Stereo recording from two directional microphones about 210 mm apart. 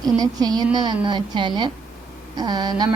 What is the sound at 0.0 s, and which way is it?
A woman's voice, 20° right (ahead or behind).